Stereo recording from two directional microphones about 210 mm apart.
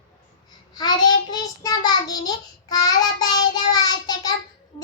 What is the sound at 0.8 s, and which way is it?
Child singing, 20° left (ahead or behind).